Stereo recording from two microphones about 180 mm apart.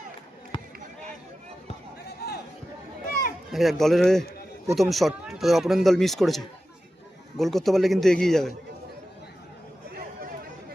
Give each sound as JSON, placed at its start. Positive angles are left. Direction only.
{"t": 0.5, "sound": "basketball bounce", "side_deg": 30}
{"t": 2.0, "sound": "a sound", "side_deg": 65}
{"t": 3.5, "sound": "speech", "side_deg": 0}